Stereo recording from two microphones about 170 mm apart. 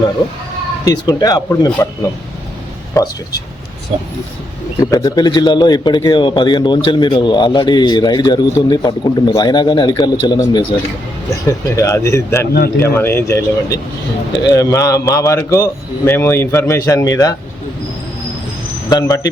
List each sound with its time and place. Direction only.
0.9 s speech: 20° left (ahead or behind)
2.9 s speech: 20° left (ahead or behind)
3.9 s speech: 40° right (ahead or behind)
4.8 s speech: 20° left (ahead or behind)
18.9 s speech: 20° left (ahead or behind)